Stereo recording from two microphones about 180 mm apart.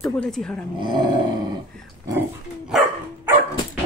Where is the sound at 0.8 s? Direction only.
25° right (ahead or behind).